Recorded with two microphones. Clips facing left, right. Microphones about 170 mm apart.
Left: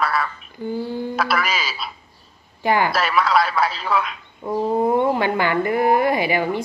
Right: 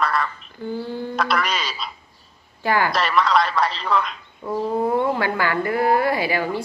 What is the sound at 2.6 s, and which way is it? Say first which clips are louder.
Speech: left 2 dB; 20° left (ahead or behind).